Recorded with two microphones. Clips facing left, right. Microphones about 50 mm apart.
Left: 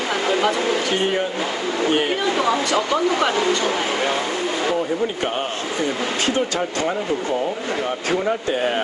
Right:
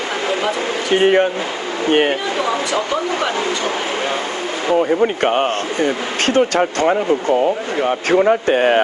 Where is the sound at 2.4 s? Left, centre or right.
Centre.